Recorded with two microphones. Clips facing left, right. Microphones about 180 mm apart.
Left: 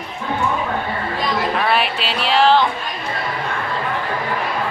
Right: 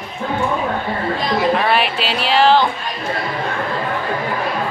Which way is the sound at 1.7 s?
Centre (ahead or behind).